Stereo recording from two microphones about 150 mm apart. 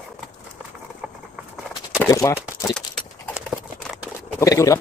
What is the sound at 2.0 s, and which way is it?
Speech, 20° left (ahead or behind).